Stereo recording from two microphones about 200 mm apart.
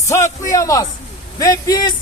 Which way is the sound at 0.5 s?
15° left (ahead or behind).